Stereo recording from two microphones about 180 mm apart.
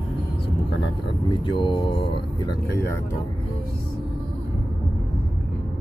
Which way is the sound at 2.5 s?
15° left (ahead or behind).